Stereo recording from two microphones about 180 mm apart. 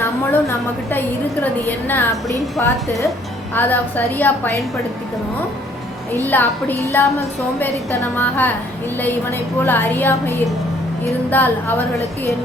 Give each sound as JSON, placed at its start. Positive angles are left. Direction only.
{"t": 0.9, "sound": "a woman's voice", "side_deg": 10}
{"t": 6.1, "sound": "a woman's voice", "side_deg": 10}
{"t": 9.6, "sound": "a woman's voice", "side_deg": 10}